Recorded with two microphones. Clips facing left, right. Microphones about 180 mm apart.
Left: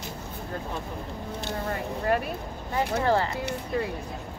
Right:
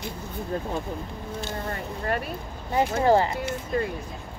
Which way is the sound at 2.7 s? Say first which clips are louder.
Right 4 dB; 15° right (ahead or behind).